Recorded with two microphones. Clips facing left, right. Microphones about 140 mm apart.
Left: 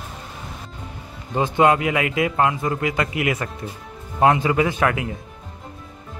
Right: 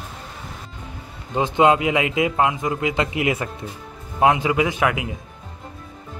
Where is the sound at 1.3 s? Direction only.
20° right (ahead or behind).